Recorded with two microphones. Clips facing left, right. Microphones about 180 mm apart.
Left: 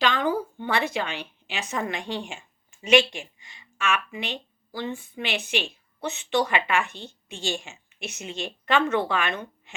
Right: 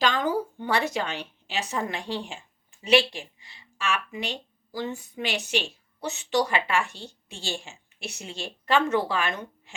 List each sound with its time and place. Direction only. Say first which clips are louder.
0.0 s a woman's voice: left 1 dB; 40° right (ahead or behind)